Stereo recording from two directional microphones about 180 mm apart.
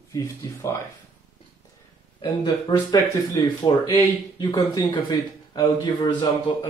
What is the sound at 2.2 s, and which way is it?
Speech, 25° left (ahead or behind).